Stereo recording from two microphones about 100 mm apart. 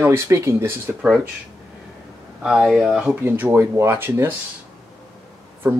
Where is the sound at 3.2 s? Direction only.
20° right (ahead or behind).